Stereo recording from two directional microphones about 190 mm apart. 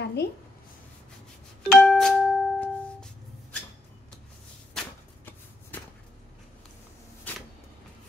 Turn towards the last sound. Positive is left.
turn(degrees=10)  # may be behind; listen again after turning